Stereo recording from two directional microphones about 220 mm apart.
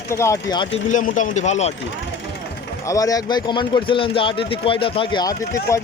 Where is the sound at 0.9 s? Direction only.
35° left (ahead or behind).